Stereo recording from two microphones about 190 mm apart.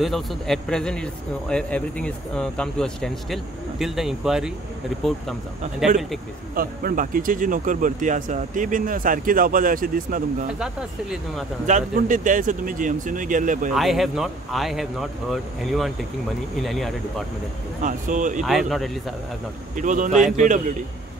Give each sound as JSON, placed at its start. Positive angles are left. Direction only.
{"t": 0.0, "sound": "speech", "side_deg": 0}
{"t": 6.5, "sound": "speech", "side_deg": -50}
{"t": 10.6, "sound": "speech", "side_deg": 0}
{"t": 11.6, "sound": "speech", "side_deg": -40}
{"t": 13.7, "sound": "speech", "side_deg": 0}
{"t": 17.8, "sound": "speech", "side_deg": -40}
{"t": 18.4, "sound": "speech", "side_deg": 0}
{"t": 19.7, "sound": "speech", "side_deg": -40}